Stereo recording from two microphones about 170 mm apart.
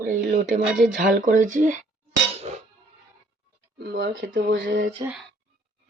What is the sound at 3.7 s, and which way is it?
Speech, 90° right.